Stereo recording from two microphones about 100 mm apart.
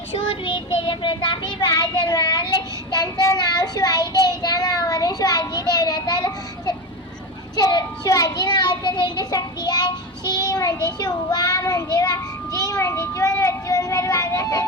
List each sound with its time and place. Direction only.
0.3 s child singing: 65° left (ahead or behind); by 6.7 s 40° left (ahead or behind)
7.5 s a child's voice: 40° left (ahead or behind)